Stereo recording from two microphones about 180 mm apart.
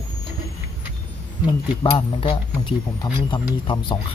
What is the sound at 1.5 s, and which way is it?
Speech, 25° left (ahead or behind).